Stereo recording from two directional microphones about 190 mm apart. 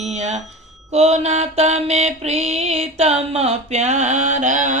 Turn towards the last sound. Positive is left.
turn(degrees=-40)  # may be behind; listen again after turning